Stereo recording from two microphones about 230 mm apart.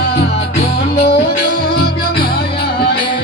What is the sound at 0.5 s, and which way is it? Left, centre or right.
Music, left.